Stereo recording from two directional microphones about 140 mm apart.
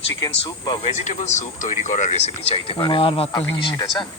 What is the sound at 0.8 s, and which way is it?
Speech, 55° left (ahead or behind).